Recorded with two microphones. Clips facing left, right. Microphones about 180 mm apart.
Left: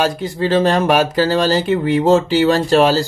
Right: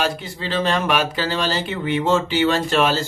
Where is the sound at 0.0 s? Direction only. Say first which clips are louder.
Left 7 dB; 40° left (ahead or behind).